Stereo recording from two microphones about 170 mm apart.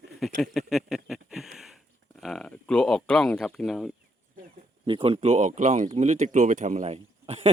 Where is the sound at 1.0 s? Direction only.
Centre (ahead or behind).